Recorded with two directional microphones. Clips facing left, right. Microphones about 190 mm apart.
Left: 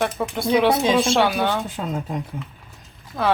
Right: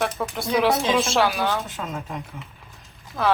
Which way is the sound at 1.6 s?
35° left (ahead or behind).